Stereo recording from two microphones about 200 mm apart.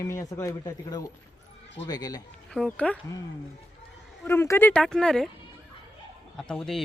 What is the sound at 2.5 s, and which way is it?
Speech, 5° left (ahead or behind).